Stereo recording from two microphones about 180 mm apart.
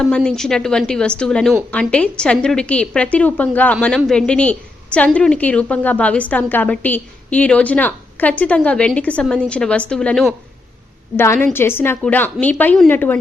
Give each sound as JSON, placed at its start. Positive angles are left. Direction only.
{"t": 0.0, "sound": "a woman's voice", "side_deg": 5}
{"t": 11.5, "sound": "a woman's voice", "side_deg": 10}